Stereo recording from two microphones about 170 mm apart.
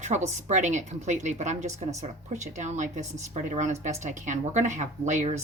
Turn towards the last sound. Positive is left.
turn(degrees=-45)  # may be behind; listen again after turning